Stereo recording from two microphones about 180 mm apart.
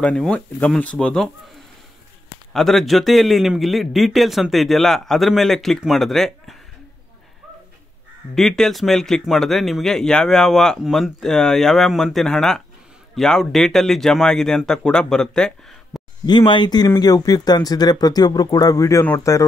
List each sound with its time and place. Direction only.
0.0 s speech: 5° left (ahead or behind)
2.5 s speech: centre (ahead or behind)
8.4 s speech: centre (ahead or behind)
16.3 s speech: 25° left (ahead or behind)